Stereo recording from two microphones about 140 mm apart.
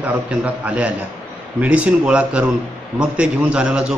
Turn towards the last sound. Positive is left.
turn(degrees=-5)  # may be behind; listen again after turning